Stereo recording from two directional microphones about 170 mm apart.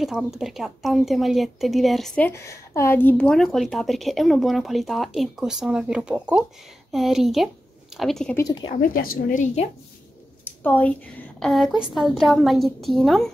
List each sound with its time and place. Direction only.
0.0 s a woman's voice: centre (ahead or behind)
8.4 s speech: 25° left (ahead or behind)
8.9 s a woman's voice: 55° left (ahead or behind)
10.4 s a woman's voice: 10° left (ahead or behind)